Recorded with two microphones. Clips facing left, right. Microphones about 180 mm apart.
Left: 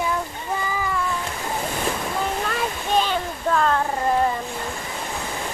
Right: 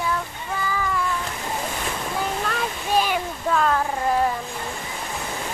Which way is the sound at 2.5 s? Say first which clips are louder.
Left 1 dB; 10° right (ahead or behind).